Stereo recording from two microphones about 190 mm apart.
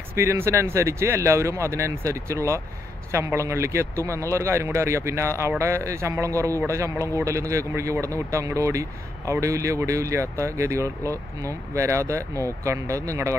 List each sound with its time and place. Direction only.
0.1 s speech: 15° right (ahead or behind)